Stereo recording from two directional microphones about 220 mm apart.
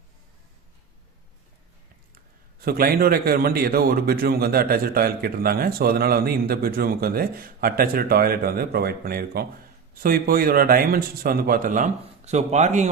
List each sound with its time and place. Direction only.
2.6 s a man's voice: 45° right (ahead or behind)